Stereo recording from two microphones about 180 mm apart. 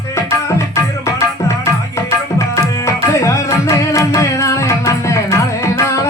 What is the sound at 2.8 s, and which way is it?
Music, 15° left (ahead or behind).